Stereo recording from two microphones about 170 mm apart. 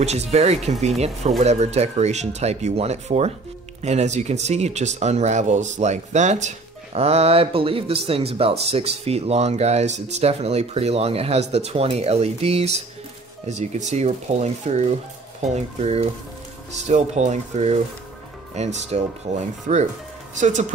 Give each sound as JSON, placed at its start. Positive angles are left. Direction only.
{"t": 0.0, "sound": "speech", "side_deg": -40}